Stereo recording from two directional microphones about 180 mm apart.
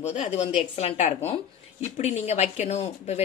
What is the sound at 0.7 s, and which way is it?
Speech, 40° left (ahead or behind).